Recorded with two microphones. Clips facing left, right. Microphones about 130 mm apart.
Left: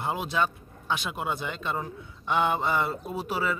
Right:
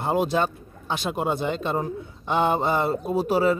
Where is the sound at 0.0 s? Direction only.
40° right (ahead or behind).